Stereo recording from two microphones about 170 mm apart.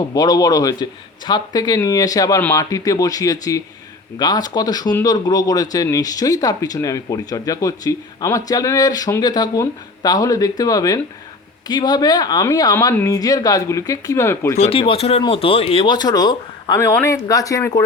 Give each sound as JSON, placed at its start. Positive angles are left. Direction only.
{"t": 0.1, "sound": "speech", "side_deg": 20}
{"t": 14.6, "sound": "speech", "side_deg": 35}